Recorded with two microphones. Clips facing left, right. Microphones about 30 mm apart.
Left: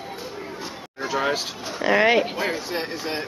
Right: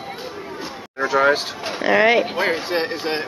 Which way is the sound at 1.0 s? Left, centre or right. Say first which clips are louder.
Right 7 dB; right.